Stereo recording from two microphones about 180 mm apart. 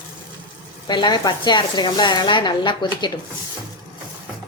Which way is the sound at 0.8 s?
25° left (ahead or behind).